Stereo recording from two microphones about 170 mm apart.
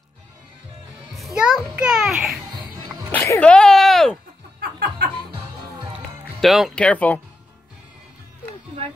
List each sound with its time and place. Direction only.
1.1 s music: centre (ahead or behind)
3.1 s a sound: 10° left (ahead or behind)
4.6 s music: 60° right (ahead or behind)
6.4 s speech: centre (ahead or behind)